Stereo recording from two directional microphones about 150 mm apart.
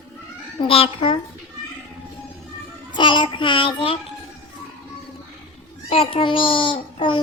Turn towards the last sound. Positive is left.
turn(degrees=35)  # may be behind; listen again after turning